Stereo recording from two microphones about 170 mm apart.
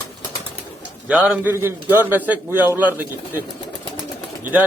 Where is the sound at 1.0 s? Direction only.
10° right (ahead or behind).